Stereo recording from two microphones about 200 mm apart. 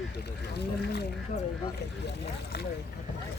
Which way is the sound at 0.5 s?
55° left (ahead or behind).